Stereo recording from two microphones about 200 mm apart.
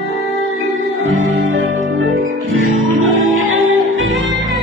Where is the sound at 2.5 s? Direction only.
85° right.